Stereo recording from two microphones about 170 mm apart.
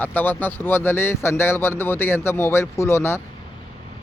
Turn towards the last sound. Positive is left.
turn(degrees=15)  # may be behind; listen again after turning